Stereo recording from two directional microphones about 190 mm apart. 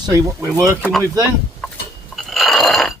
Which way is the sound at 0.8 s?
5° left (ahead or behind).